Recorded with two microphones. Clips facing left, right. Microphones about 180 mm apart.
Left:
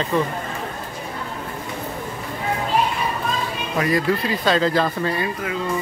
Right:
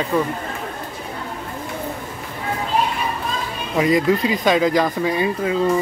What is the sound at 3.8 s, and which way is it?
Speech, 15° right (ahead or behind).